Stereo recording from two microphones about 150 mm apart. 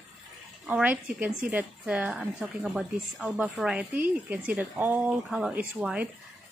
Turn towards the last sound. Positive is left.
turn(degrees=-5)  # may be behind; listen again after turning